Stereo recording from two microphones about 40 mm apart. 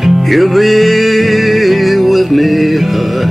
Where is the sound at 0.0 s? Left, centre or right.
Centre.